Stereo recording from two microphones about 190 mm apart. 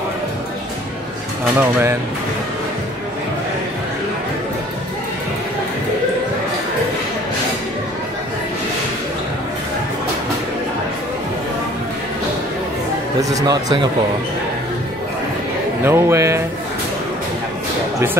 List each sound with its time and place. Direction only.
1.6 s speech: 10° right (ahead or behind)
13.2 s a man's voice: 20° right (ahead or behind)
15.8 s speech: 15° right (ahead or behind)